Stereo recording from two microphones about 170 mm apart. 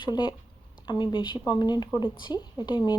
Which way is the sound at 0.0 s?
25° left (ahead or behind).